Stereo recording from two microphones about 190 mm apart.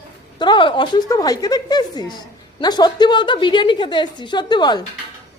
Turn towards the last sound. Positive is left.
turn(degrees=25)  # may be behind; listen again after turning